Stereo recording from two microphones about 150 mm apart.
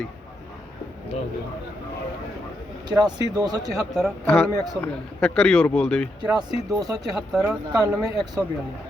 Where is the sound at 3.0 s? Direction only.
25° right (ahead or behind).